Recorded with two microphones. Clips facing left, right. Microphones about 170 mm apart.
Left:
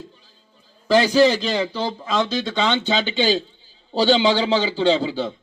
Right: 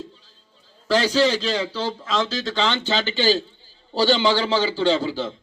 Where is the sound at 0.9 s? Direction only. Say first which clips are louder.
Left 4 dB; 15° left (ahead or behind).